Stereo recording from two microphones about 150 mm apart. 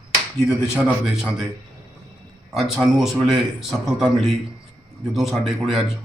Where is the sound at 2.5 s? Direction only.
Centre (ahead or behind).